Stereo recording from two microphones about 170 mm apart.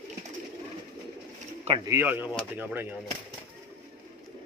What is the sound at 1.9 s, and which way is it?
Speech, 10° right (ahead or behind).